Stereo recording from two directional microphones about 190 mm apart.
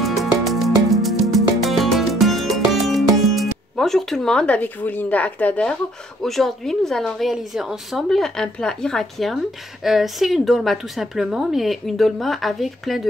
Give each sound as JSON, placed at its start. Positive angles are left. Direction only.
{"t": 0.0, "sound": "music", "side_deg": 0}
{"t": 6.2, "sound": "a woman's voice", "side_deg": 0}